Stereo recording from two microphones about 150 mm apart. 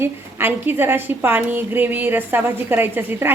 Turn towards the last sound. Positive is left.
turn(degrees=-15)  # may be behind; listen again after turning